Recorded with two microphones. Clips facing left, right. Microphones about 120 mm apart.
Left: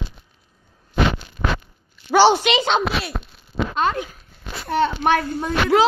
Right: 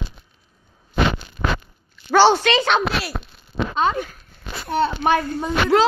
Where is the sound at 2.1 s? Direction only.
15° left (ahead or behind).